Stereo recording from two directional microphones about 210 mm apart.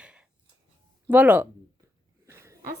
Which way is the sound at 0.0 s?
5° right (ahead or behind).